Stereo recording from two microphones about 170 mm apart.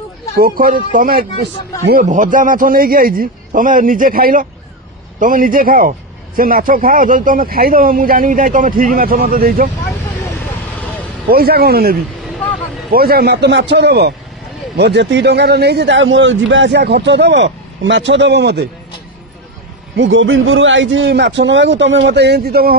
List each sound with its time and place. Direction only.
0.4 s a man's voice: 55° right (ahead or behind)
11.2 s a man's voice: 65° right (ahead or behind)
12.2 s vehicle: centre (ahead or behind)
12.9 s speech: 60° right (ahead or behind)
14.8 s a man's voice: 85° right
20.0 s a man's voice: 90° right; by 22.8 s 65° right (ahead or behind)